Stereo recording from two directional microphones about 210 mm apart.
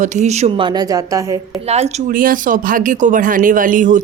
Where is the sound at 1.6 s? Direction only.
30° right (ahead or behind).